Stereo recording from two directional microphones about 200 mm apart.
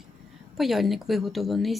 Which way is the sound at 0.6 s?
Centre (ahead or behind).